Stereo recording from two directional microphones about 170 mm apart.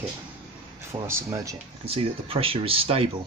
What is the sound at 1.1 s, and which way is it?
Speech, 15° right (ahead or behind).